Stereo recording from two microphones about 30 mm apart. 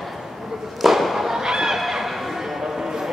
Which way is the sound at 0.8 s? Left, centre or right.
Centre.